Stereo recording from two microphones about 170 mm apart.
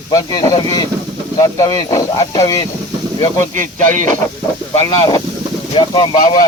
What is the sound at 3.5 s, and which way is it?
Speech, 50° right (ahead or behind).